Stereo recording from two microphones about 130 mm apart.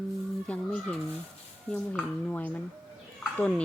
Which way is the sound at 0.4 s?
10° left (ahead or behind).